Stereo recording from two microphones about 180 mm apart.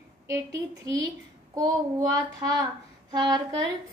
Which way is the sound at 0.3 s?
20° right (ahead or behind).